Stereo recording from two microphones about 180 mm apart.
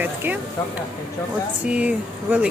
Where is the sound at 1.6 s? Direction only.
5° right (ahead or behind).